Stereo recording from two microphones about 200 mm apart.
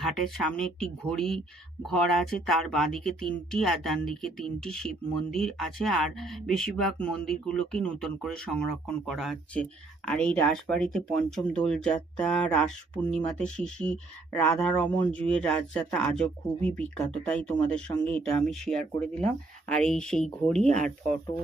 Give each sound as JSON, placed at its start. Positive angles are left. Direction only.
{"t": 0.0, "sound": "speech", "side_deg": 0}
{"t": 20.7, "sound": "speech", "side_deg": -35}